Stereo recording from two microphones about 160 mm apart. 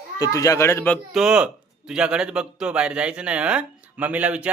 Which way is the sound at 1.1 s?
5° right (ahead or behind).